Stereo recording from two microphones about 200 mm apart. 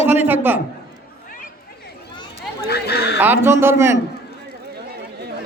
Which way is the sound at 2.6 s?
55° left (ahead or behind).